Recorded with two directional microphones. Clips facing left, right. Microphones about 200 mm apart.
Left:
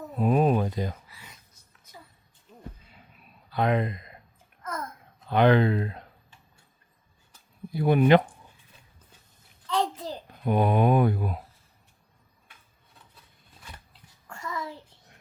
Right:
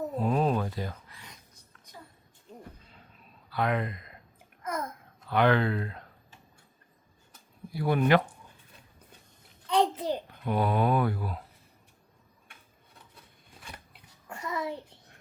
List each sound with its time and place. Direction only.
0.2 s speech: 15° left (ahead or behind)
3.5 s speech: 20° left (ahead or behind)
5.3 s speech: 20° left (ahead or behind)
7.7 s speech: 20° left (ahead or behind)
9.6 s a sound: 20° right (ahead or behind)
10.4 s speech: 20° left (ahead or behind)
14.3 s a sound: 20° right (ahead or behind)